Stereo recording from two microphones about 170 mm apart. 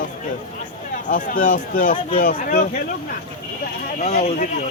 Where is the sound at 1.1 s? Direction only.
55° left (ahead or behind).